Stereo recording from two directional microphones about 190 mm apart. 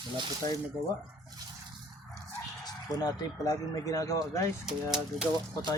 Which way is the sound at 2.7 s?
20° left (ahead or behind).